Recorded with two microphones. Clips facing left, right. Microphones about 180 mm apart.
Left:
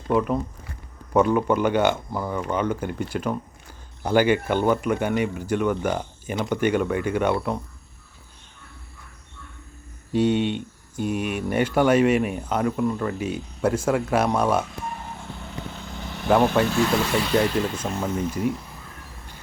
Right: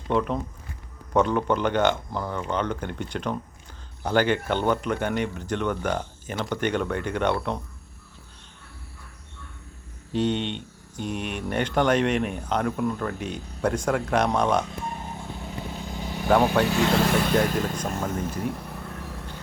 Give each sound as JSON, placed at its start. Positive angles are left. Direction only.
{"t": 0.1, "sound": "speech", "side_deg": 5}
{"t": 10.1, "sound": "speech", "side_deg": 10}
{"t": 15.4, "sound": "vehicle", "side_deg": -10}
{"t": 16.6, "sound": "speech", "side_deg": 5}
{"t": 17.0, "sound": "speech", "side_deg": -50}
{"t": 18.1, "sound": "a sound", "side_deg": -50}